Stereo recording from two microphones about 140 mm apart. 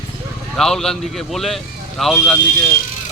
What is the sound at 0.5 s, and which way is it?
Speech, 5° left (ahead or behind).